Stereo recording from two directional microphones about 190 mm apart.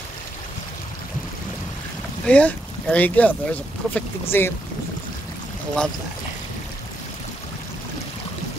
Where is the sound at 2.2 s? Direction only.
5° left (ahead or behind).